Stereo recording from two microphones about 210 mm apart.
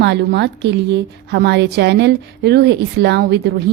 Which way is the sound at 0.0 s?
55° right (ahead or behind).